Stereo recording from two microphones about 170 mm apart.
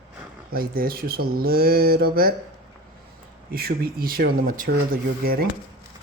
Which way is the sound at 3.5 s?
65° right (ahead or behind).